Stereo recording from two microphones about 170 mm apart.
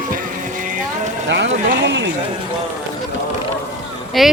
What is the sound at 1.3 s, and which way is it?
Speech, 90° right.